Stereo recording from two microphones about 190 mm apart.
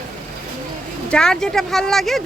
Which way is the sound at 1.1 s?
5° left (ahead or behind).